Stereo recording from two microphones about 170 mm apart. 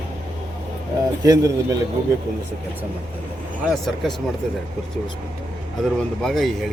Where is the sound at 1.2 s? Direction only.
20° right (ahead or behind).